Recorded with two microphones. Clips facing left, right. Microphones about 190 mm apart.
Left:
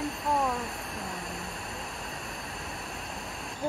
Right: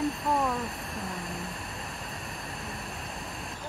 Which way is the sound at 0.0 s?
Centre (ahead or behind).